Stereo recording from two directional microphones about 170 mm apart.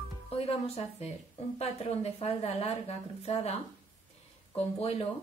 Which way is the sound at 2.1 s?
35° left (ahead or behind).